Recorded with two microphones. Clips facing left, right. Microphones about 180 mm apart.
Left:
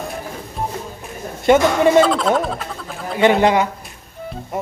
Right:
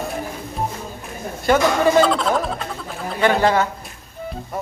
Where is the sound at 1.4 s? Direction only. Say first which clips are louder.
Left 3 dB; 20° left (ahead or behind).